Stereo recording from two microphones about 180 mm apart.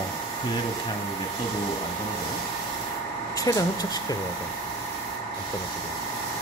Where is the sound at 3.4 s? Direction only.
20° left (ahead or behind).